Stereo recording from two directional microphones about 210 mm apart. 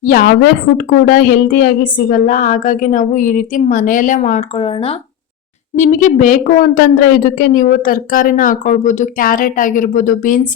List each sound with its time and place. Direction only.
0.0 s a woman's voice: 45° left (ahead or behind)